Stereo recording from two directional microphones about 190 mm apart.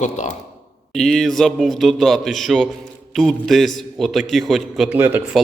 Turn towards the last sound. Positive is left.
turn(degrees=-10)  # may be behind; listen again after turning